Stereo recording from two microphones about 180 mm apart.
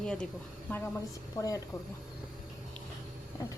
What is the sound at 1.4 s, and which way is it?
Speech, 20° left (ahead or behind).